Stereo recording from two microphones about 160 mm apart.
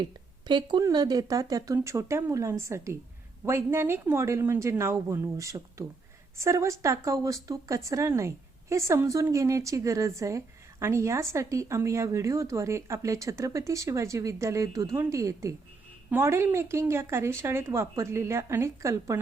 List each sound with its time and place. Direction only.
0.0 s a woman's voice: 30° right (ahead or behind)